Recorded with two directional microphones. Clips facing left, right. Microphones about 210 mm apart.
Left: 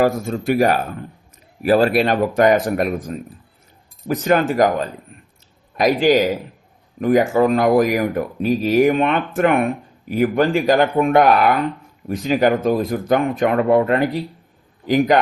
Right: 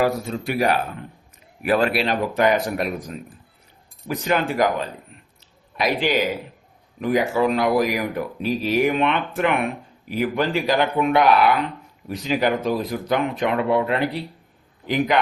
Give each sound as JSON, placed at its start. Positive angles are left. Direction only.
{"t": 0.0, "sound": "speech", "side_deg": 45}
{"t": 4.1, "sound": "speech", "side_deg": 45}